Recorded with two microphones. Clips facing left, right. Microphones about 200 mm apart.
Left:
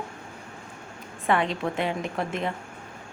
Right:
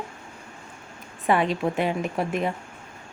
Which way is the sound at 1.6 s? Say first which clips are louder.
Right 3 dB; 15° right (ahead or behind).